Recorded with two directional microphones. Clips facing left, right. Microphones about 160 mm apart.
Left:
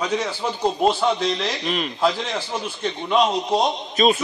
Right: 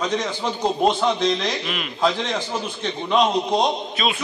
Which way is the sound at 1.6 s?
35° left (ahead or behind).